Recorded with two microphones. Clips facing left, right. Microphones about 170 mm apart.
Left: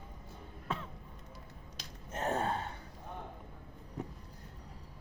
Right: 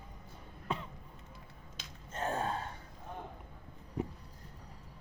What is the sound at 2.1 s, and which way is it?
Gasp, 70° left (ahead or behind).